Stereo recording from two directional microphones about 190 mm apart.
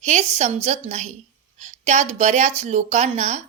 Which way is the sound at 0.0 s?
35° right (ahead or behind).